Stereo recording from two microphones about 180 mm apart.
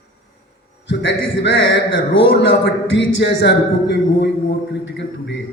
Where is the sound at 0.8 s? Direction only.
80° left.